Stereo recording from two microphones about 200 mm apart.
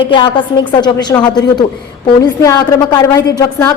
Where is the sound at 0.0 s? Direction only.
25° left (ahead or behind).